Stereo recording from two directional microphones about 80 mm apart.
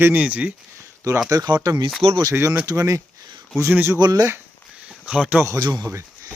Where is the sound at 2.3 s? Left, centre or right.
Right.